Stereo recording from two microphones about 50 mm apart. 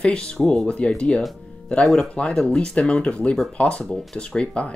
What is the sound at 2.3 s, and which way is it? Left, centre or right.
Speech, centre.